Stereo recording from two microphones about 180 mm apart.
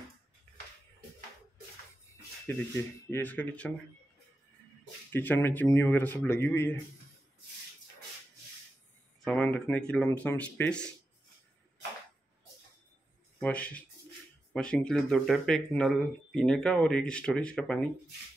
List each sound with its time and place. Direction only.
2.4 s speech: 15° left (ahead or behind)
5.1 s speech: 10° left (ahead or behind)
9.2 s speech: 5° left (ahead or behind)
13.4 s speech: 5° left (ahead or behind)